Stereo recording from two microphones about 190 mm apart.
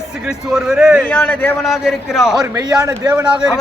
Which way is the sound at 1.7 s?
Centre (ahead or behind).